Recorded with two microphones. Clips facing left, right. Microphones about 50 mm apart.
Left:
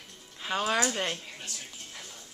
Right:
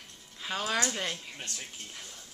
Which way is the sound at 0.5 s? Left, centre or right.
Centre.